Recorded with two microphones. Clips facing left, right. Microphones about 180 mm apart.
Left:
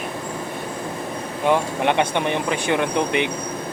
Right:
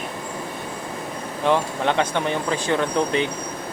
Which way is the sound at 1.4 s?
15° left (ahead or behind).